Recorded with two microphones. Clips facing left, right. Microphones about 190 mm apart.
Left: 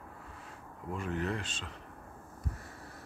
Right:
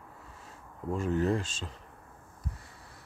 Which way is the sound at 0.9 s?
35° right (ahead or behind).